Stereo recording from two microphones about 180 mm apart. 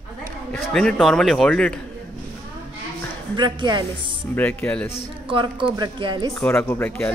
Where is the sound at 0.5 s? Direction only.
5° left (ahead or behind).